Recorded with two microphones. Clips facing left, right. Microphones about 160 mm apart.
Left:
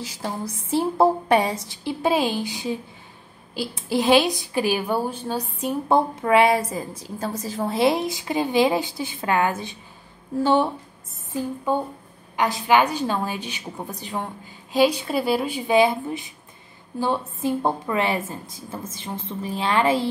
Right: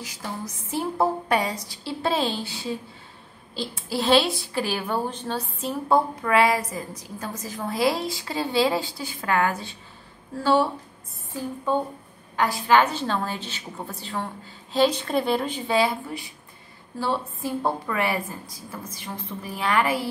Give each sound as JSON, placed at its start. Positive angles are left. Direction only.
{"t": 0.0, "sound": "a woman's voice", "side_deg": 30}